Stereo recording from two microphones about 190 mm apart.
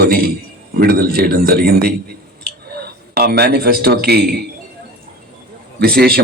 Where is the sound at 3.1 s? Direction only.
55° right (ahead or behind).